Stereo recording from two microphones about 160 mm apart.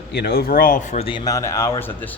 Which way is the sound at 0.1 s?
80° left.